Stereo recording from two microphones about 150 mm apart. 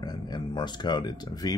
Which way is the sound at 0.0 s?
25° left (ahead or behind).